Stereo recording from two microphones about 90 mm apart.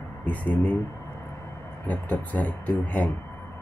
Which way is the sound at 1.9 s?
15° left (ahead or behind).